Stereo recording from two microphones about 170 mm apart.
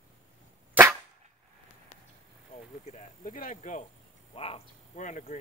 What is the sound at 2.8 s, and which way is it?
Speech, 45° left (ahead or behind).